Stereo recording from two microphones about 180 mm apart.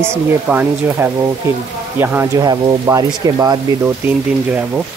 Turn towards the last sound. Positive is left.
turn(degrees=-10)  # may be behind; listen again after turning